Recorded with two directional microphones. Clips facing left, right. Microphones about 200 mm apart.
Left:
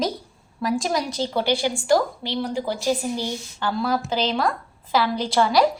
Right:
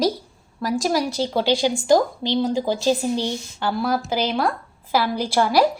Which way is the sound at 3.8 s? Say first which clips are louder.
Even; 10° right (ahead or behind).